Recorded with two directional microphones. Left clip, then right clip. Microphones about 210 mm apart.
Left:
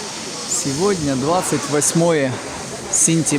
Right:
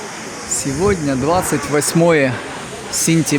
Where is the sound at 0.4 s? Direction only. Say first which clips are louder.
Right 1 dB; 55° left (ahead or behind).